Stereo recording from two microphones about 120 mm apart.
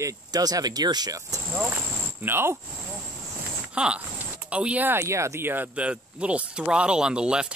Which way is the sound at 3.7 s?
10° right (ahead or behind).